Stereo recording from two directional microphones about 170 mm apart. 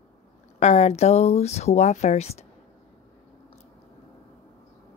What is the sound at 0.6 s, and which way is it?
A woman's voice, 40° left (ahead or behind).